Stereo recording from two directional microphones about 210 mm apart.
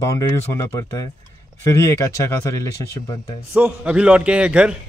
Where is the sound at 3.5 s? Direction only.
5° right (ahead or behind).